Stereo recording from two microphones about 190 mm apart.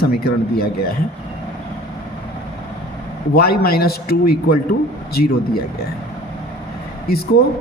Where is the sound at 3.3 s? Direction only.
55° left (ahead or behind).